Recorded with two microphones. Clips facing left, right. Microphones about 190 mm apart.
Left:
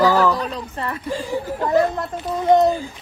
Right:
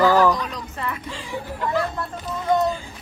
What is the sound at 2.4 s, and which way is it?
Speech, 35° left (ahead or behind).